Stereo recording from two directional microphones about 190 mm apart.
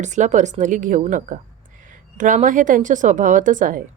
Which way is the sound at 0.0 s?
40° right (ahead or behind).